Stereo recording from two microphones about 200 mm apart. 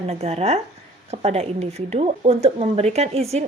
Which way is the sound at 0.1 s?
30° right (ahead or behind).